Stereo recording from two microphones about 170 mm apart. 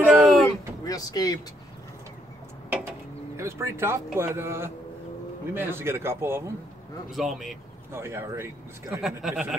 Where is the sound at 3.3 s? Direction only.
15° right (ahead or behind).